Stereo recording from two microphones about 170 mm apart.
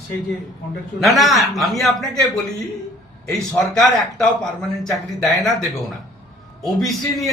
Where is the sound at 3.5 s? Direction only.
5° left (ahead or behind).